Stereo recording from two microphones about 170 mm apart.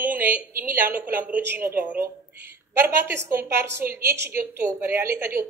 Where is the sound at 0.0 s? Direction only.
10° right (ahead or behind).